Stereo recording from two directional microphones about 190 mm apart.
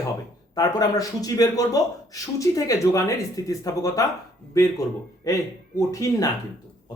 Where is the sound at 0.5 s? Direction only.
20° left (ahead or behind).